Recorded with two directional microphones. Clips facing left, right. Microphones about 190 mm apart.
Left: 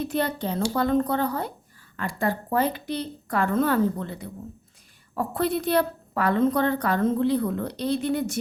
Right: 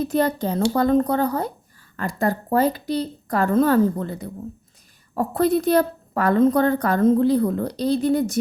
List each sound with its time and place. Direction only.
0.0 s a woman's voice: 40° right (ahead or behind)